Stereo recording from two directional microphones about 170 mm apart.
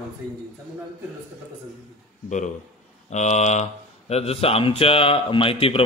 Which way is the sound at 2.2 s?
45° left (ahead or behind).